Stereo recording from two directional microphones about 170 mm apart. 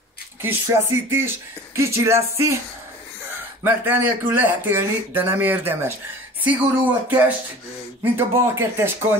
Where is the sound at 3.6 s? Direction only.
10° right (ahead or behind).